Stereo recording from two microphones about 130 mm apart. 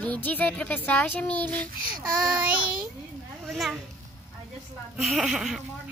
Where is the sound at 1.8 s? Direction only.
90° right.